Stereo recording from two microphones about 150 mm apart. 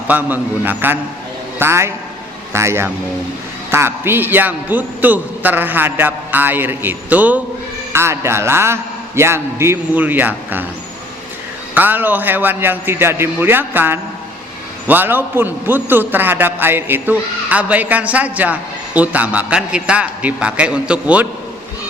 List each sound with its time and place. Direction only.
0.1 s a man's voice: 10° right (ahead or behind)
11.7 s a man's voice: 10° right (ahead or behind)